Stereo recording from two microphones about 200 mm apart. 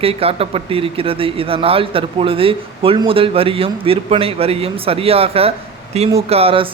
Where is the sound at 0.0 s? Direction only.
30° right (ahead or behind).